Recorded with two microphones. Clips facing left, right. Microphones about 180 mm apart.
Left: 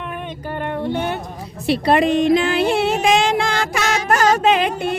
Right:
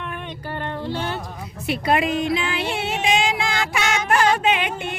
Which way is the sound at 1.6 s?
35° left (ahead or behind).